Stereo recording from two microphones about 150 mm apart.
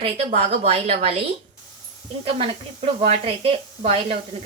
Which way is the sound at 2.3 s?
40° right (ahead or behind).